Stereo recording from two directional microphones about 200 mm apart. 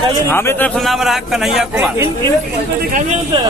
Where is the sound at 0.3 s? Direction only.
10° left (ahead or behind); by 2.0 s 5° right (ahead or behind).